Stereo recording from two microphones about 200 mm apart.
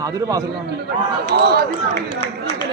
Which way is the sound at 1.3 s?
55° right (ahead or behind).